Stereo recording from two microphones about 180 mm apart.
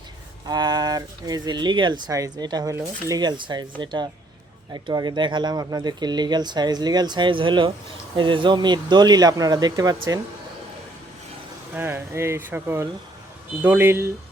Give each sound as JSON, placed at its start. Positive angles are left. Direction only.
{"t": 0.4, "sound": "speech", "side_deg": -20}
{"t": 11.7, "sound": "speech", "side_deg": -10}